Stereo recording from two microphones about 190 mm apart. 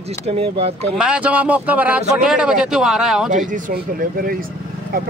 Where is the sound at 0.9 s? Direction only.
5° right (ahead or behind).